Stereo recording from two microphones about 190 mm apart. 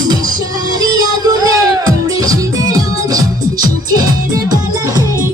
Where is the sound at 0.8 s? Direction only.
20° right (ahead or behind).